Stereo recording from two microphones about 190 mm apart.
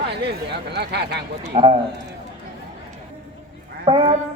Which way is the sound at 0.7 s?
60° right (ahead or behind).